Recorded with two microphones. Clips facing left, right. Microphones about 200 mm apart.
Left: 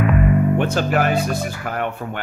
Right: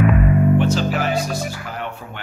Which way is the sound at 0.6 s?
55° left (ahead or behind).